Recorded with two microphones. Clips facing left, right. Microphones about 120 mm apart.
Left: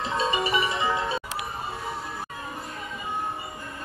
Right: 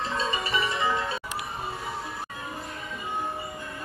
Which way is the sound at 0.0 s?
25° left (ahead or behind).